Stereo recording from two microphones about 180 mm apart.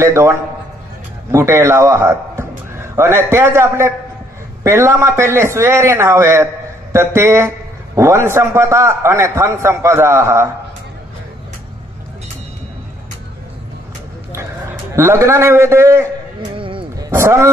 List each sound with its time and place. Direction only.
0.0 s a man's voice: 15° right (ahead or behind)
15.0 s a man's voice: 15° right (ahead or behind)
16.5 s music: 30° right (ahead or behind)
17.1 s a man's voice: 15° right (ahead or behind)